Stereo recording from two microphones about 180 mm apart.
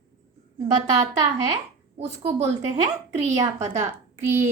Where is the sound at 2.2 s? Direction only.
35° right (ahead or behind).